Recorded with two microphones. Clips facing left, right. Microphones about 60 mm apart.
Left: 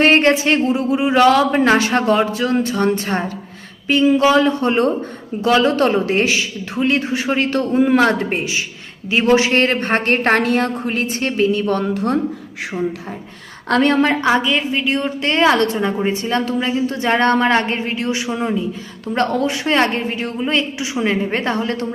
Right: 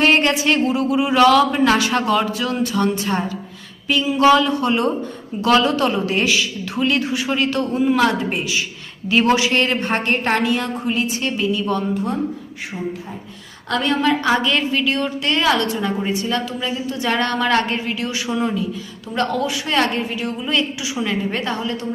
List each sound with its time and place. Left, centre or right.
0.0 s a woman's voice: left
9.3 s a woman's voice: left
11.9 s speech: left
13.7 s a woman's voice: left
14.3 s a woman's voice: centre
14.7 s a woman's voice: left
19.0 s a woman's voice: left